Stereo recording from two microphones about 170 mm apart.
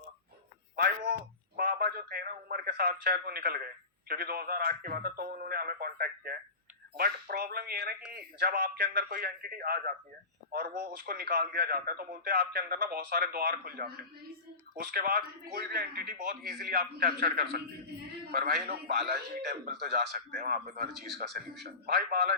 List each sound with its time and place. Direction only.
0.8 s music: 60° right (ahead or behind)
1.5 s a man's voice: 65° right (ahead or behind)